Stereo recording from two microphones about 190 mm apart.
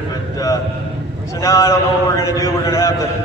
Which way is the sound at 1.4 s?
15° left (ahead or behind).